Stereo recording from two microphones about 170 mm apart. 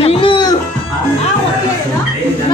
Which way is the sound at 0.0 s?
35° left (ahead or behind).